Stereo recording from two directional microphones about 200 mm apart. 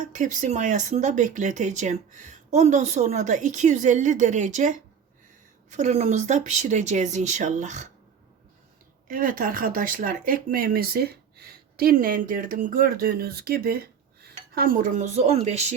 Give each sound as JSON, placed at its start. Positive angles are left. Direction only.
{"t": 0.0, "sound": "speech", "side_deg": -40}
{"t": 9.0, "sound": "speech", "side_deg": -45}